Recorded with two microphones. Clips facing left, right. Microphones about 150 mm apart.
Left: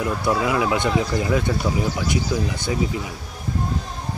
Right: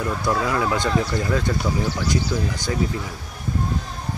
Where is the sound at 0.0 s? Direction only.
5° left (ahead or behind).